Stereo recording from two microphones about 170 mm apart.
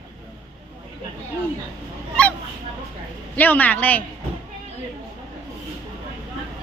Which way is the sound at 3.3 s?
10° left (ahead or behind).